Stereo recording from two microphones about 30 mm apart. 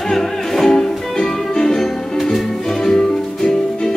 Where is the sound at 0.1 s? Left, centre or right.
Centre.